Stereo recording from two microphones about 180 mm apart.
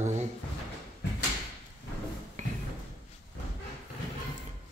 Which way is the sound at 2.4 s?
40° right (ahead or behind).